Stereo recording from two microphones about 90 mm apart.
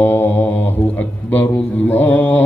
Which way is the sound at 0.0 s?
25° left (ahead or behind).